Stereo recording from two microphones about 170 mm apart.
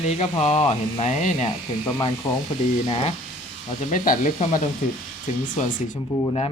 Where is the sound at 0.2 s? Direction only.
40° left (ahead or behind).